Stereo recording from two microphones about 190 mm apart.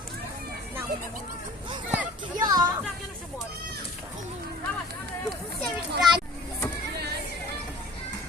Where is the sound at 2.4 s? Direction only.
20° right (ahead or behind).